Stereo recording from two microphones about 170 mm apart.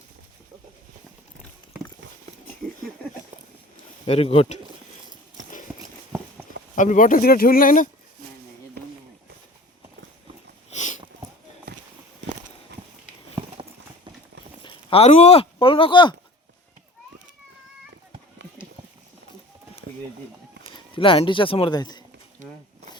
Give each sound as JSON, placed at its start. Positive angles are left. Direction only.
{"t": 4.0, "sound": "speech", "side_deg": 35}
{"t": 6.7, "sound": "speech", "side_deg": 50}
{"t": 8.8, "sound": "a sound", "side_deg": -70}
{"t": 10.7, "sound": "sniff", "side_deg": 45}
{"t": 14.6, "sound": "speech", "side_deg": 30}
{"t": 20.9, "sound": "speech", "side_deg": 30}